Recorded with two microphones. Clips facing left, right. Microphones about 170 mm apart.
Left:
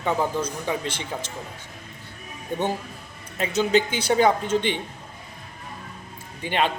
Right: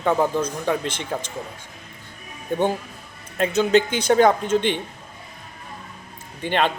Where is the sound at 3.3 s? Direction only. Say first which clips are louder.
Right 4 dB; 50° right (ahead or behind).